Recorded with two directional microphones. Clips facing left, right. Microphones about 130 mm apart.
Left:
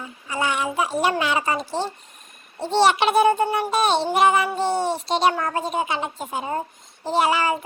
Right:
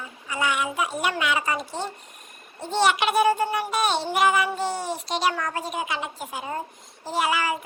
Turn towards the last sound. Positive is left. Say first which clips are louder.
# left 4 dB
turn(degrees=30)  # may be behind; listen again after turning